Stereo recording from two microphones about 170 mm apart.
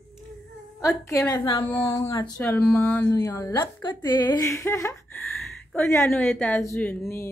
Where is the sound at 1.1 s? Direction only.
15° left (ahead or behind).